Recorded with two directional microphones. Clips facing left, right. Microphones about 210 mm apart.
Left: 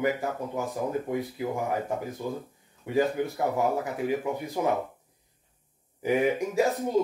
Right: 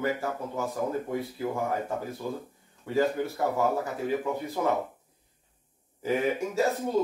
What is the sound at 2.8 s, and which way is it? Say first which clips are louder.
Speech: left 1 dB; 15° left (ahead or behind).